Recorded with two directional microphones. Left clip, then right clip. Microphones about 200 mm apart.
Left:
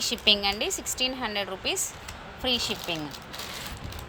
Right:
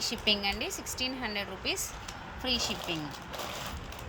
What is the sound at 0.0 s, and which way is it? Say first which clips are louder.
Speech: left 6 dB; centre (ahead or behind).